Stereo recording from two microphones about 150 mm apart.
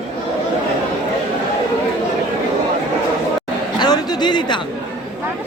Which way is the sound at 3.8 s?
30° left (ahead or behind).